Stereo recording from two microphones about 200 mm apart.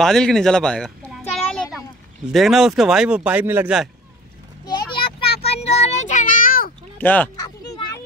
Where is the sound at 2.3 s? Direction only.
Centre (ahead or behind).